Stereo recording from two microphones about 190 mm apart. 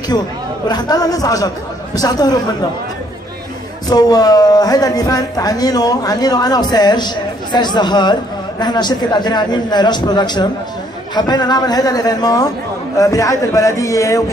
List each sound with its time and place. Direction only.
0.7 s speech: 20° left (ahead or behind)
3.9 s a man's voice: 20° left (ahead or behind)